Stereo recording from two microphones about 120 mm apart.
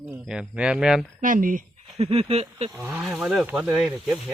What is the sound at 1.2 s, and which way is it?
Speech, 90° right.